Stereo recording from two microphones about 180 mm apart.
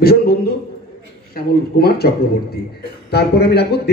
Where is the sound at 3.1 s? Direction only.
65° left (ahead or behind).